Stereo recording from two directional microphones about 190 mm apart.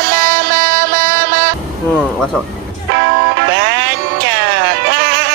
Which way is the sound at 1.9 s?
5° left (ahead or behind).